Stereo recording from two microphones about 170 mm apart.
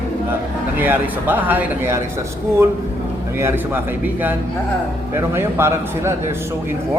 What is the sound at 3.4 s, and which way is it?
Speech, 10° right (ahead or behind).